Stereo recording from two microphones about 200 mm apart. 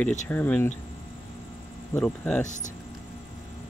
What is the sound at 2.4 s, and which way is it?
Speech, 40° left (ahead or behind).